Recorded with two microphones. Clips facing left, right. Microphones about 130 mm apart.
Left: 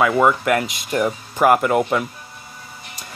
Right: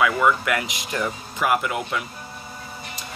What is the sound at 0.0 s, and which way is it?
Speech, 40° left (ahead or behind).